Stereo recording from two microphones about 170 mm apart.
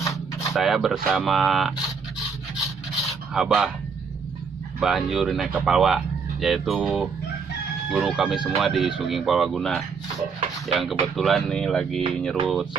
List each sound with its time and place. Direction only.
0.0 s a sound: 20° left (ahead or behind)
0.5 s speech: centre (ahead or behind)
3.3 s speech: centre (ahead or behind)
4.7 s speech: centre (ahead or behind)